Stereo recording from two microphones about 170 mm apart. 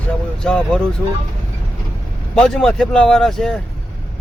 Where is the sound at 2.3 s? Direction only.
5° left (ahead or behind).